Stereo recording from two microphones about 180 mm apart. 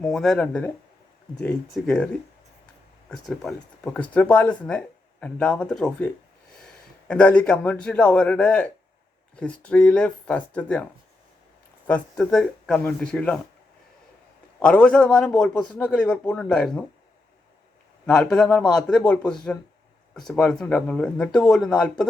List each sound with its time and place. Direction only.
0.0 s speech: centre (ahead or behind)
3.1 s speech: 5° left (ahead or behind)
11.9 s speech: 5° left (ahead or behind)
14.6 s speech: 5° left (ahead or behind)
18.0 s speech: 5° left (ahead or behind)